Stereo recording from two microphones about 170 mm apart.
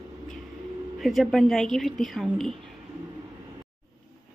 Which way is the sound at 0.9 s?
Centre (ahead or behind).